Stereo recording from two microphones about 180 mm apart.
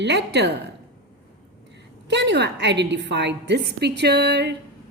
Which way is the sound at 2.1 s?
70° right (ahead or behind).